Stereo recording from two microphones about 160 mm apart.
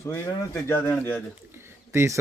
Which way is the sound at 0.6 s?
15° left (ahead or behind).